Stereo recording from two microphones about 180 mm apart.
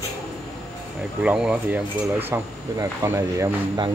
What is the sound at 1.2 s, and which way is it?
Speech, 5° right (ahead or behind).